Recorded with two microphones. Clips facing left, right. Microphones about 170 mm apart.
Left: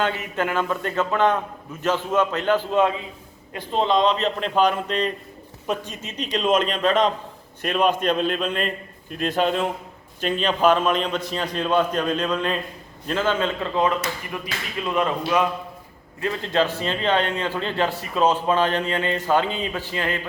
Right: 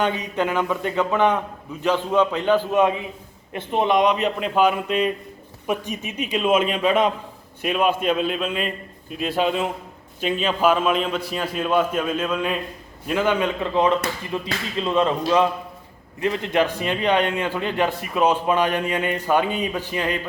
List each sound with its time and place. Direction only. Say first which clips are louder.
0.0 s a man's voice: right 2 dB; 15° right (ahead or behind)